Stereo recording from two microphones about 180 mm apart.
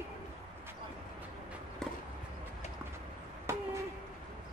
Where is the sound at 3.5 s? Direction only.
15° right (ahead or behind).